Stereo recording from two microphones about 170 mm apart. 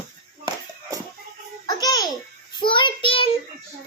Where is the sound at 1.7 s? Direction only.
25° left (ahead or behind).